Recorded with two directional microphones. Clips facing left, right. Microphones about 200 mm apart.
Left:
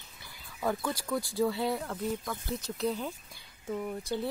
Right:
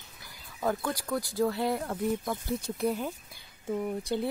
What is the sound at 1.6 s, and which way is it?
Speech, 15° right (ahead or behind).